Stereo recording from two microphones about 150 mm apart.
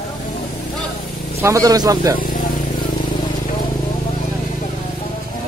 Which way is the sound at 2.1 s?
70° left (ahead or behind).